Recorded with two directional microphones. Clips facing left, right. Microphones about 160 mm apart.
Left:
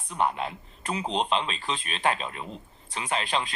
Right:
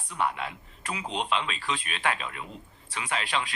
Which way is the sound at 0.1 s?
30° left (ahead or behind).